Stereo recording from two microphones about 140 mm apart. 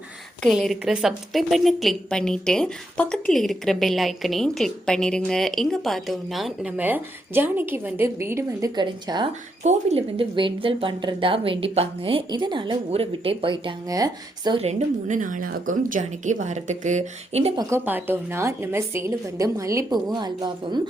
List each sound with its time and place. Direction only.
0.4 s a woman's voice: centre (ahead or behind); by 8.7 s 20° right (ahead or behind)
8.7 s a woman's voice: 30° right (ahead or behind)
9.6 s speech: 50° right (ahead or behind)
10.3 s a woman's voice: 35° right (ahead or behind)
14.6 s speech: 55° right (ahead or behind)
17.6 s a woman's voice: 20° right (ahead or behind)